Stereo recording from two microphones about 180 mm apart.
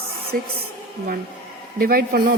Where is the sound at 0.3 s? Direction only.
55° right (ahead or behind).